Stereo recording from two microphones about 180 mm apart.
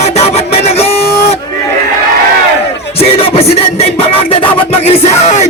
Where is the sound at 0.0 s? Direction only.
35° left (ahead or behind).